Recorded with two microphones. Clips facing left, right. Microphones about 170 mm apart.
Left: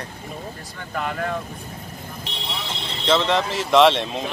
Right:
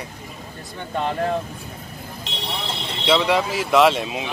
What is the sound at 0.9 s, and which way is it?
Speech, 25° right (ahead or behind).